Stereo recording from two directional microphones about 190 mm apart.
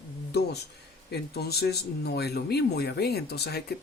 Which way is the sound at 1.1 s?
55° left (ahead or behind).